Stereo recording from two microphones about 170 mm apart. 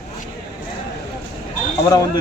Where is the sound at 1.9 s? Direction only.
20° left (ahead or behind).